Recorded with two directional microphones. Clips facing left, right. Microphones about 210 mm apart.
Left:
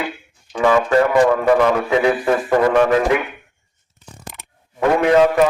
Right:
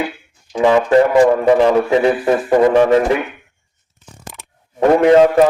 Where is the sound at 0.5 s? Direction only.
20° right (ahead or behind).